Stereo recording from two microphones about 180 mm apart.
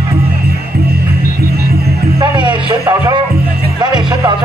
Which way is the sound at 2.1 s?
20° right (ahead or behind).